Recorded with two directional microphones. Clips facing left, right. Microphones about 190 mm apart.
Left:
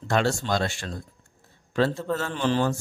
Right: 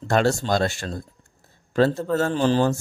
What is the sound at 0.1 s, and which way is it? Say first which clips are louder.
A man's voice: right 4 dB; 40° right (ahead or behind).